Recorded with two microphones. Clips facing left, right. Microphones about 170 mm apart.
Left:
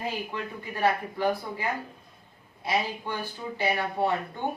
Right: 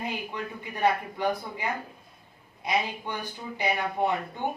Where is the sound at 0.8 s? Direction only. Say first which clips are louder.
Even; 20° right (ahead or behind).